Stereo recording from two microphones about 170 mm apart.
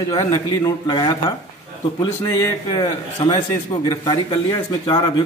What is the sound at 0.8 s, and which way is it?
Speech, 25° left (ahead or behind).